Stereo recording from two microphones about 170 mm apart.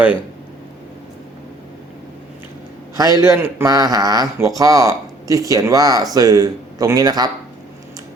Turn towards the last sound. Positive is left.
turn(degrees=-25)  # may be behind; listen again after turning